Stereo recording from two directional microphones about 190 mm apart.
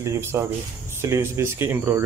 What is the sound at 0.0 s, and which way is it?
Speech, 15° right (ahead or behind).